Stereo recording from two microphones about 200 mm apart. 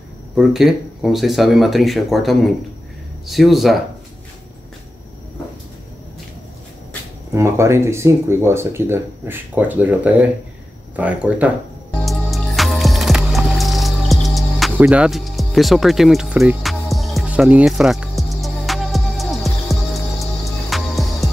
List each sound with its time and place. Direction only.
0.4 s speech: centre (ahead or behind)
7.3 s speech: 15° right (ahead or behind)
12.0 s music: centre (ahead or behind)